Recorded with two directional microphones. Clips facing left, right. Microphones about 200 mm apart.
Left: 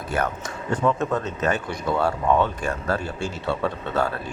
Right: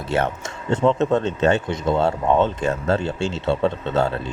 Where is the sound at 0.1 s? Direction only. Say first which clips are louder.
Right 4 dB; 25° right (ahead or behind).